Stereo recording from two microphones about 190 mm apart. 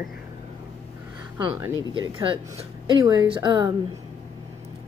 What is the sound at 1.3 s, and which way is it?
Speech, 10° right (ahead or behind).